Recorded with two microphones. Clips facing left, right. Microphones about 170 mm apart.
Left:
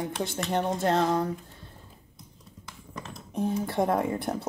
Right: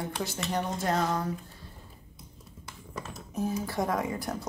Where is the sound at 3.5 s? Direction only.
25° left (ahead or behind).